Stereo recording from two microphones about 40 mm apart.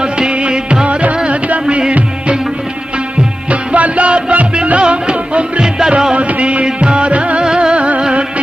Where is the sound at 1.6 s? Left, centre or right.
Right.